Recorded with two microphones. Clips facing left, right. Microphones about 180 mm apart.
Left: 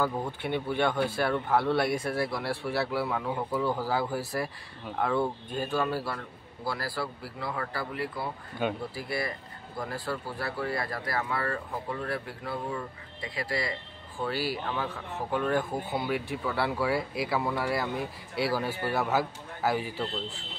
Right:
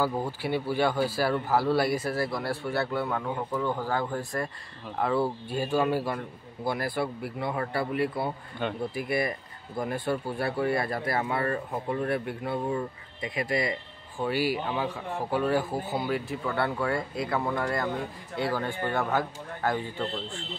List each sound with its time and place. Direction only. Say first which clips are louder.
0.0 s a man's voice: right 2 dB; 5° right (ahead or behind)
4.9 s speech: right 1 dB; 5° right (ahead or behind); by 8.3 s 25° right (ahead or behind)
8.6 s speech: left 1 dB; 5° left (ahead or behind)
8.9 s a man's voice: right 5 dB; 20° right (ahead or behind); by 19.8 s 5° left (ahead or behind)